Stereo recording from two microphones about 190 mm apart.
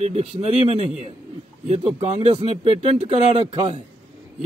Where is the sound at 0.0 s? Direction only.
35° right (ahead or behind).